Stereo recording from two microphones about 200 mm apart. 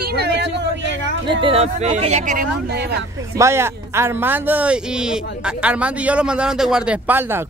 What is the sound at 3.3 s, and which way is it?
A man's voice, 15° right (ahead or behind).